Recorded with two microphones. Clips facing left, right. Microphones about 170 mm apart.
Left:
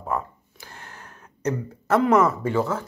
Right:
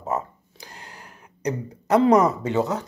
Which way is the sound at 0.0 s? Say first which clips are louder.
Right 1 dB; 20° right (ahead or behind).